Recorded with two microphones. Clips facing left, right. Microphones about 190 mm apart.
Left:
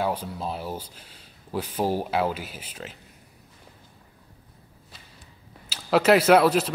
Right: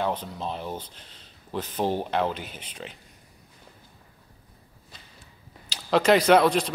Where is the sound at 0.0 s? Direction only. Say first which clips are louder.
Left 1 dB; 10° left (ahead or behind).